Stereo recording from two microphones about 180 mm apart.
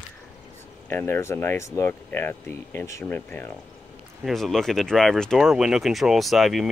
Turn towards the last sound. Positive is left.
turn(degrees=0)  # may be behind; listen again after turning